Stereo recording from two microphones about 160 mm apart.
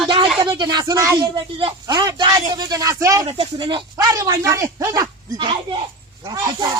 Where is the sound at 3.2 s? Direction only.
35° right (ahead or behind).